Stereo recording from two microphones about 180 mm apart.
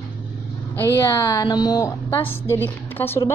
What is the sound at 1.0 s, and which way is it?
A woman's voice, 25° left (ahead or behind).